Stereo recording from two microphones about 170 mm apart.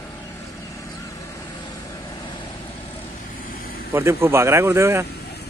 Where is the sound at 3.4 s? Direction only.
55° left (ahead or behind).